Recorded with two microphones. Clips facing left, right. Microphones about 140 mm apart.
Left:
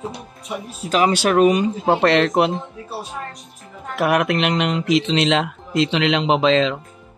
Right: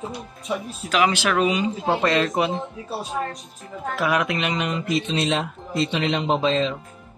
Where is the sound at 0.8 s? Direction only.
35° left (ahead or behind); by 2.5 s 65° left (ahead or behind).